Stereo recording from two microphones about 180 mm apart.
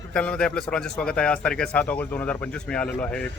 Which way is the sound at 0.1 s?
5° left (ahead or behind).